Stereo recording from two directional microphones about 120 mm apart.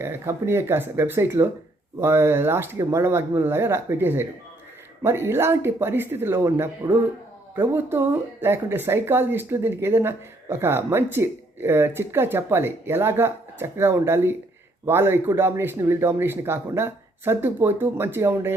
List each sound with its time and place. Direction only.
0.0 s speech: 20° right (ahead or behind)